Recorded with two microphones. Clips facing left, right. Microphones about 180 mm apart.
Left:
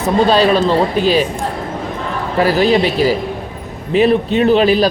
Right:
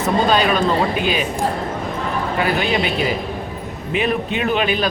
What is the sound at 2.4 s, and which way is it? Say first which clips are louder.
Speech: left 8 dB; 35° left (ahead or behind).